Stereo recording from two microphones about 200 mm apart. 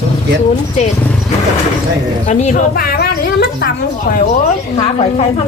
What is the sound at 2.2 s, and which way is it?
A woman's voice, 35° left (ahead or behind).